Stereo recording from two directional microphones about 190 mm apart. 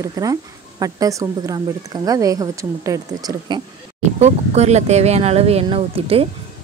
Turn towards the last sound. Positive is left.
turn(degrees=-30)  # may be behind; listen again after turning